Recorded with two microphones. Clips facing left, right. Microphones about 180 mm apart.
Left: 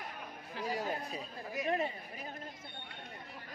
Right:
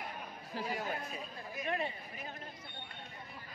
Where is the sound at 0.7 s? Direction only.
35° left (ahead or behind).